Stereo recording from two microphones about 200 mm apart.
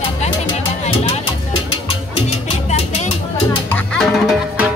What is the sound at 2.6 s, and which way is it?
Music, 35° left (ahead or behind).